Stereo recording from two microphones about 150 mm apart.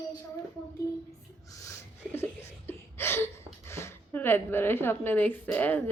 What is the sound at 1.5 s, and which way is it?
A woman's voice, 20° left (ahead or behind).